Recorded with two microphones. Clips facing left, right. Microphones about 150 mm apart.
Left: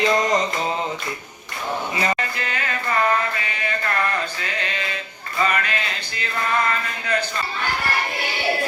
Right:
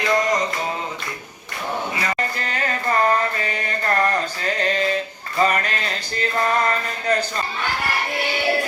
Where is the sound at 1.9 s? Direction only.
25° left (ahead or behind).